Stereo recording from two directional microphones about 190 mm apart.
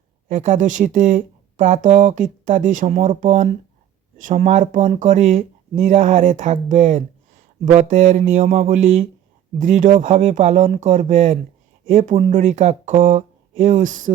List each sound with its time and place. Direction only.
0.3 s speech: 40° right (ahead or behind)